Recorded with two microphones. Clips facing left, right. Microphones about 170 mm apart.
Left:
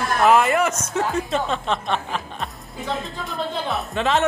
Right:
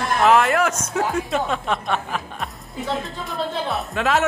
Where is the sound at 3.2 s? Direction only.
Centre (ahead or behind).